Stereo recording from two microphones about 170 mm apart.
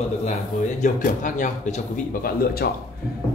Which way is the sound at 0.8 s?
50° left (ahead or behind).